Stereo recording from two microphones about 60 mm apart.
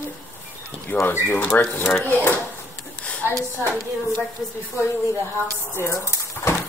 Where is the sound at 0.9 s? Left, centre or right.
Left.